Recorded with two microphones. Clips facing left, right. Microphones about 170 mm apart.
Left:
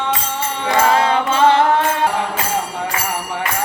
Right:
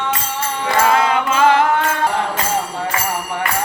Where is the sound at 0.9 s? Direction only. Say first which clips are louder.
Even; 30° left (ahead or behind).